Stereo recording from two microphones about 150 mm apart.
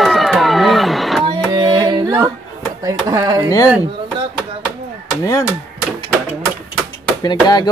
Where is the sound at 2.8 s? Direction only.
25° right (ahead or behind).